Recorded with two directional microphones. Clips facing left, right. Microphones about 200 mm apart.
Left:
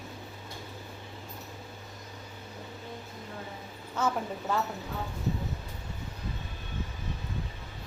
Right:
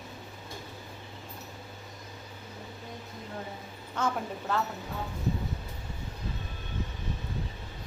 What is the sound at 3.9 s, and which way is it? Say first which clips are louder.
Speech: left 1 dB; 10° left (ahead or behind).